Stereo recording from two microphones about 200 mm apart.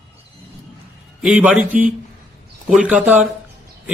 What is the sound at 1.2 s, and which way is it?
Speech, 5° right (ahead or behind).